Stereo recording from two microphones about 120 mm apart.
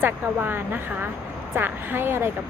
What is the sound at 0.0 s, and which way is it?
A woman's voice, 15° right (ahead or behind).